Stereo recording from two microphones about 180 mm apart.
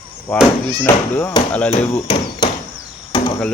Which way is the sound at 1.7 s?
40° left (ahead or behind).